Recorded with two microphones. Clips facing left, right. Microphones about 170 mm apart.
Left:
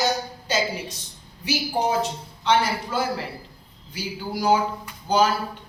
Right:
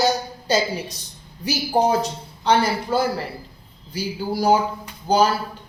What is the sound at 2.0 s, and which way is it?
Speech, 35° right (ahead or behind).